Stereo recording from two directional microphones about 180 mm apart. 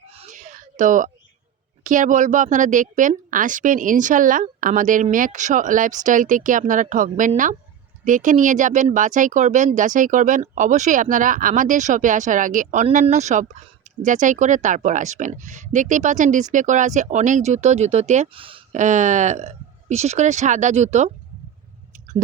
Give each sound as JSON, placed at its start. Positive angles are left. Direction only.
{"t": 0.1, "sound": "a sound", "side_deg": -35}
{"t": 1.8, "sound": "speech", "side_deg": -45}
{"t": 18.8, "sound": "speech", "side_deg": -40}